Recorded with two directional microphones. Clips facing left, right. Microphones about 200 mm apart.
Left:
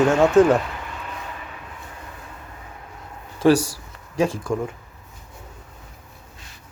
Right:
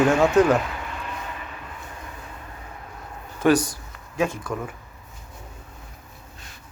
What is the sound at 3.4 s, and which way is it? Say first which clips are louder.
Speech: left 2 dB; 30° left (ahead or behind).